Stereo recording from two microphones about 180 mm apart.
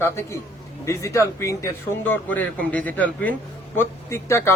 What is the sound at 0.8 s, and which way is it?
Speech, 15° left (ahead or behind).